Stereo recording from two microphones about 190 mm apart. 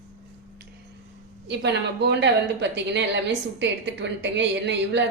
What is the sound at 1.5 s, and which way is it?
A woman's voice, 65° right (ahead or behind).